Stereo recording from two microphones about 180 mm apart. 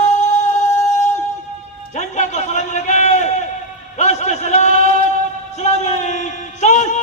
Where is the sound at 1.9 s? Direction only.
40° left (ahead or behind).